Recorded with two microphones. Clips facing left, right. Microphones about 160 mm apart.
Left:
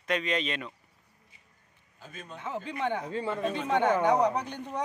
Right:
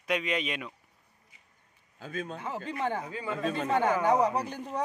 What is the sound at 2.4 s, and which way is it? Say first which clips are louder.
Speech: left 4 dB; 5° right (ahead or behind).